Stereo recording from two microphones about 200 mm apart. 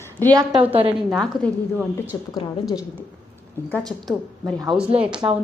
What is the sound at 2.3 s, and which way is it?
Speech, 15° left (ahead or behind).